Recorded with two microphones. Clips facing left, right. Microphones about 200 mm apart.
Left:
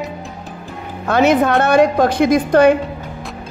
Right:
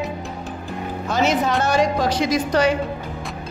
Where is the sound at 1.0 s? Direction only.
60° left (ahead or behind).